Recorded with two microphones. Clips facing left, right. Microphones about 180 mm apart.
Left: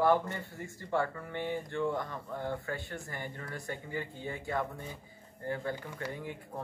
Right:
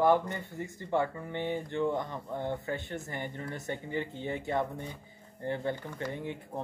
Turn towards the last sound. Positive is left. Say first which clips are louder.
# right 3 dB
turn(degrees=-25)  # may be behind; listen again after turning